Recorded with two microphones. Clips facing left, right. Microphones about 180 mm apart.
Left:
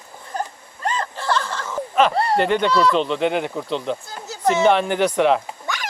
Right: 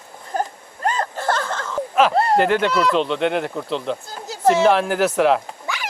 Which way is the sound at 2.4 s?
Centre (ahead or behind).